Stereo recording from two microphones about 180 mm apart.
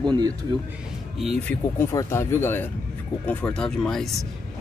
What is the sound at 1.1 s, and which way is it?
Speech, centre (ahead or behind).